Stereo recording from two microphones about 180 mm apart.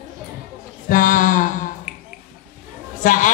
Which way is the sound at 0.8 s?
50° left (ahead or behind).